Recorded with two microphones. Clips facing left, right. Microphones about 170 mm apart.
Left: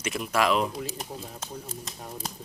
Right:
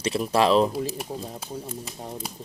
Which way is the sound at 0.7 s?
5° right (ahead or behind).